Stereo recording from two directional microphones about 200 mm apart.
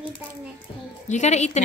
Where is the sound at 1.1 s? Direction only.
35° left (ahead or behind).